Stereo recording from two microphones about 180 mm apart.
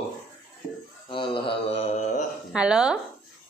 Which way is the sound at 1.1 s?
30° left (ahead or behind).